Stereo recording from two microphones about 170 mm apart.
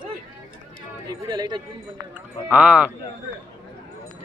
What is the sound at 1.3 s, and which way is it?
Speech, 25° right (ahead or behind).